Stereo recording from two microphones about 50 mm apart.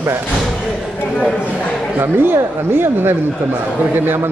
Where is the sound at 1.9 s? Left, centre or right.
Right.